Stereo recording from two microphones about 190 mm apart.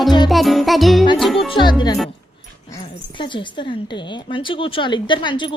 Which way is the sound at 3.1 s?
25° left (ahead or behind).